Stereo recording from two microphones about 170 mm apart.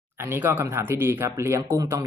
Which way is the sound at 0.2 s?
15° right (ahead or behind).